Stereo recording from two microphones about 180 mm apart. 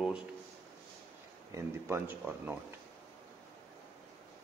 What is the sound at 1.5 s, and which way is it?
A man's voice, 15° right (ahead or behind).